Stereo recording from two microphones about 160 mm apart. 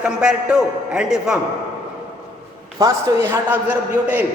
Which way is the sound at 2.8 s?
15° right (ahead or behind).